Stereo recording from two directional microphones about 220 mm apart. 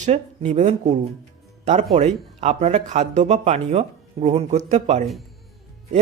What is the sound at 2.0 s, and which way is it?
A man's voice, 30° right (ahead or behind).